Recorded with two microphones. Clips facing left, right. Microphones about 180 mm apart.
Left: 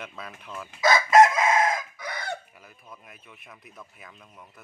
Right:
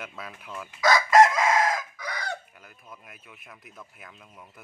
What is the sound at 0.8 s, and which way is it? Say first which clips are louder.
Chicken: left 1 dB; 25° left (ahead or behind).